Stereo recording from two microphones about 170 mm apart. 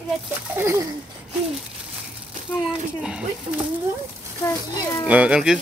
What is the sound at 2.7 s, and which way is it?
Speech, 5° right (ahead or behind).